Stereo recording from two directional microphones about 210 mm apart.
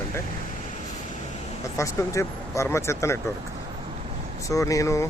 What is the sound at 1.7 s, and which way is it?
Speech, 15° left (ahead or behind).